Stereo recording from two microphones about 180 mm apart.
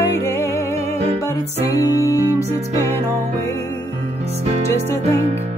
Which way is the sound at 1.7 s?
20° left (ahead or behind).